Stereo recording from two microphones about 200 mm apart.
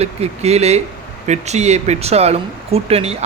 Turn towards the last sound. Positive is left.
turn(degrees=-30)  # may be behind; listen again after turning